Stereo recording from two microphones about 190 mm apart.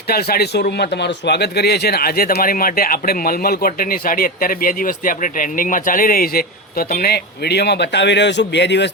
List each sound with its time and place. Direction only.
0.1 s speech: 55° left (ahead or behind)